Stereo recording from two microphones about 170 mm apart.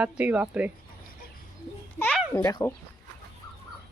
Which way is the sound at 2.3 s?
20° left (ahead or behind).